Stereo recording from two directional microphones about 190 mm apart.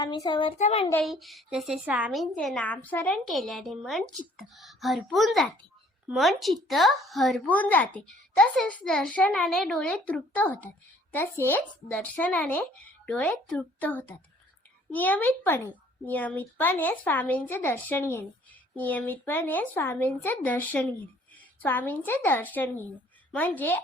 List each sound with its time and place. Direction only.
0.0 s a child's voice: 25° left (ahead or behind)
1.0 s speech: centre (ahead or behind)